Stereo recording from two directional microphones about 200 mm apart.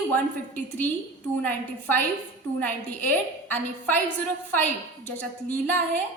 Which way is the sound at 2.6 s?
10° left (ahead or behind).